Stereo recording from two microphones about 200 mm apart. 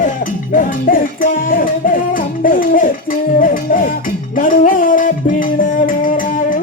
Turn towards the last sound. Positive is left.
turn(degrees=40)  # may be behind; listen again after turning